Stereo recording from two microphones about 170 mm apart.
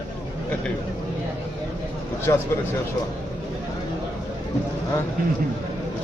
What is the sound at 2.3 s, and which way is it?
Speech, 20° left (ahead or behind).